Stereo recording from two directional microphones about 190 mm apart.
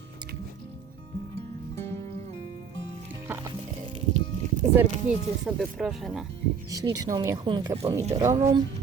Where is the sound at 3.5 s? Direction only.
25° right (ahead or behind).